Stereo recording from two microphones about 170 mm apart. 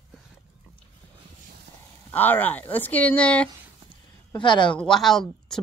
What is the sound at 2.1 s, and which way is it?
Speech, 10° left (ahead or behind).